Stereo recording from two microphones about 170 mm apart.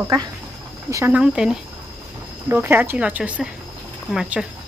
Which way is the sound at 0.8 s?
15° right (ahead or behind).